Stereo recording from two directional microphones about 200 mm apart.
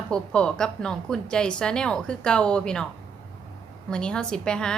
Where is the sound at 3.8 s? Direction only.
5° left (ahead or behind).